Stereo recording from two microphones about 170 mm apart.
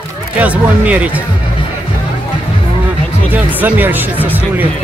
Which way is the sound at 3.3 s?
10° right (ahead or behind).